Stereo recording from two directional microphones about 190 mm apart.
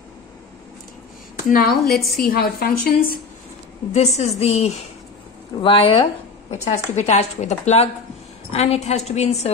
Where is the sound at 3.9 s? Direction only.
35° left (ahead or behind).